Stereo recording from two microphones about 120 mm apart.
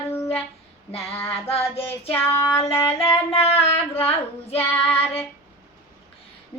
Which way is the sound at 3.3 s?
60° left (ahead or behind).